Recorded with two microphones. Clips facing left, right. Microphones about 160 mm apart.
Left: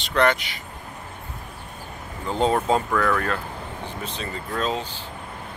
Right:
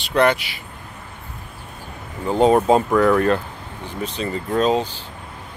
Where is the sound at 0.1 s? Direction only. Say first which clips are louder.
Right 3 dB; 15° right (ahead or behind).